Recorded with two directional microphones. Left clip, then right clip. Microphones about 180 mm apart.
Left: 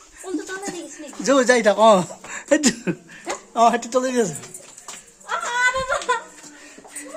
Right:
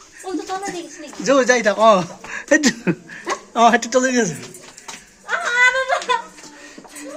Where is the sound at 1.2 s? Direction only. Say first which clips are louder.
Right 1 dB; 25° left (ahead or behind).